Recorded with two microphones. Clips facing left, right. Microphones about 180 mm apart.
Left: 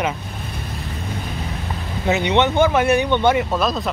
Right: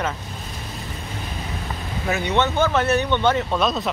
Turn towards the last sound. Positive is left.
turn(degrees=0)  # may be behind; listen again after turning